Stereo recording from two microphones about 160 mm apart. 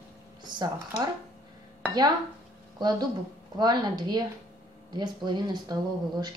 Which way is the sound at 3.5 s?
25° right (ahead or behind).